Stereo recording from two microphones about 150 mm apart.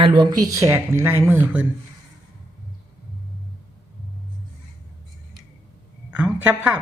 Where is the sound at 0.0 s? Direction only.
35° right (ahead or behind); by 1.4 s 15° right (ahead or behind).